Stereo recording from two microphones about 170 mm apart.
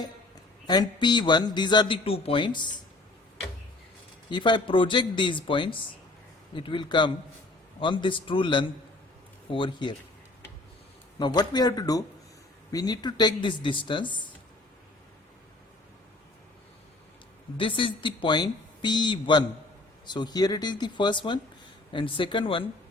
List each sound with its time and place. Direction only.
0.7 s a man's voice: 25° left (ahead or behind)
4.3 s a man's voice: 25° left (ahead or behind)
11.2 s a man's voice: 25° left (ahead or behind)
17.6 s a man's voice: 30° left (ahead or behind)